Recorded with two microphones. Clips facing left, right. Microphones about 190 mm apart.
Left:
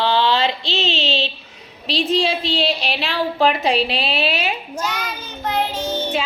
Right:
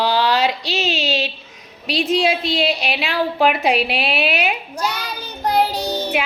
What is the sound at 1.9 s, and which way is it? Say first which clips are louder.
A woman's voice: right 1 dB; 10° right (ahead or behind).